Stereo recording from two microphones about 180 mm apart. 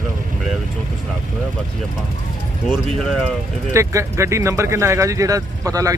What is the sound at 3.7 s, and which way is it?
Speech, 15° right (ahead or behind).